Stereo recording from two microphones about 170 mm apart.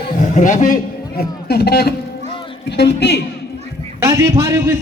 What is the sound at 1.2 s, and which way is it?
Speech, 70° left (ahead or behind).